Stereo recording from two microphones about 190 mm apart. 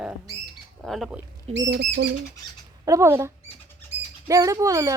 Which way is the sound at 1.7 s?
60° right (ahead or behind).